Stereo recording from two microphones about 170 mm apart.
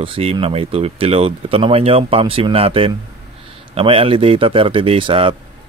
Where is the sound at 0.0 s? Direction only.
35° right (ahead or behind).